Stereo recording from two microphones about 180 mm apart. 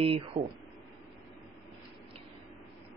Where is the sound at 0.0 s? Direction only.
30° right (ahead or behind).